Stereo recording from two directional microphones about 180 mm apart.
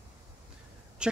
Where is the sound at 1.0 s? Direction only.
5° right (ahead or behind).